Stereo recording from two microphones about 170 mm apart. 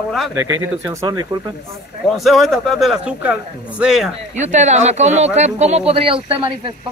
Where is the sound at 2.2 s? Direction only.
Centre (ahead or behind).